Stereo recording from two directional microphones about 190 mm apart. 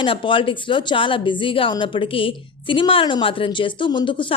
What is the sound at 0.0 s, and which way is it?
A woman's voice, 25° left (ahead or behind).